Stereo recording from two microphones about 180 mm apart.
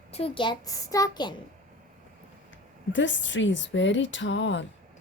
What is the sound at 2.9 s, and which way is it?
Speech, 90° left.